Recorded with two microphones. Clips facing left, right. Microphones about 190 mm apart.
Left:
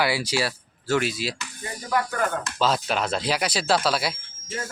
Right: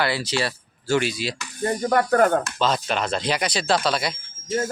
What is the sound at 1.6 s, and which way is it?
Speech, 55° right (ahead or behind).